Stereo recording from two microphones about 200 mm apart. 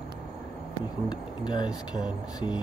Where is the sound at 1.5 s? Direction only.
20° left (ahead or behind).